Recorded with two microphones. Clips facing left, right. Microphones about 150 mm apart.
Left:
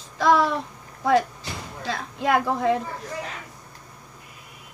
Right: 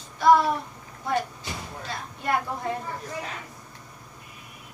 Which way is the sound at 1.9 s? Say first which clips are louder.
Left 5 dB; 90° left.